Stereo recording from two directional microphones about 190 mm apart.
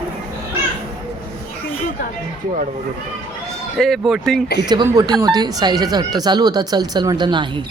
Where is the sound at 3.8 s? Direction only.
Centre (ahead or behind).